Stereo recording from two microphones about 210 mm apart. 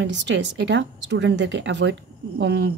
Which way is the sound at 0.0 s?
60° right (ahead or behind).